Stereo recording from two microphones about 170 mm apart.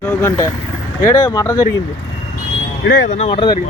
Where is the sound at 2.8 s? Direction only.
90° left.